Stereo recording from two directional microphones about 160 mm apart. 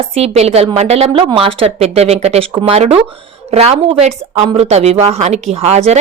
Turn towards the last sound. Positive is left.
turn(degrees=-45)  # may be behind; listen again after turning